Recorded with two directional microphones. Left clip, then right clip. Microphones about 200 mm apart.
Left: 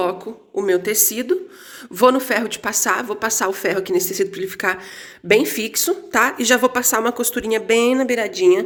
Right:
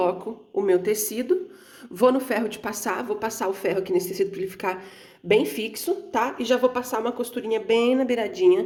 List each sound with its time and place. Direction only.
0.0 s a woman's voice: centre (ahead or behind)